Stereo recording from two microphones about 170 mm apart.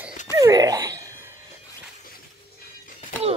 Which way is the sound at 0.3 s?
20° right (ahead or behind).